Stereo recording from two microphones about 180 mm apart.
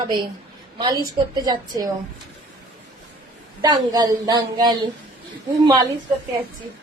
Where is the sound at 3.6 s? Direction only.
25° right (ahead or behind).